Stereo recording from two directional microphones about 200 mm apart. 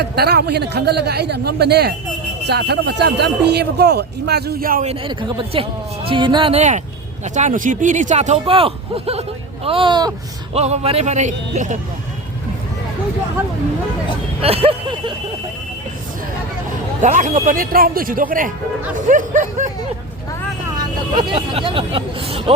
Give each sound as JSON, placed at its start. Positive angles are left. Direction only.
{"t": 0.0, "sound": "a man's voice", "side_deg": -55}
{"t": 4.9, "sound": "speech", "side_deg": -25}
{"t": 10.5, "sound": "speech", "side_deg": -30}
{"t": 14.4, "sound": "speech", "side_deg": -30}
{"t": 17.0, "sound": "a man's voice", "side_deg": -35}
{"t": 21.2, "sound": "speech", "side_deg": -30}